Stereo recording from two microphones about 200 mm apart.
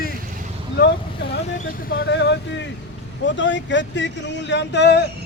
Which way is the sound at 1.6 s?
50° left (ahead or behind).